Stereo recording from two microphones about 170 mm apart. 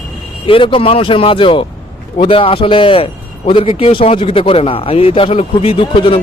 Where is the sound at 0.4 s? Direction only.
30° left (ahead or behind).